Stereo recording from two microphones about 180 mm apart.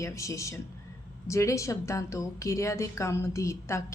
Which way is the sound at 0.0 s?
15° left (ahead or behind).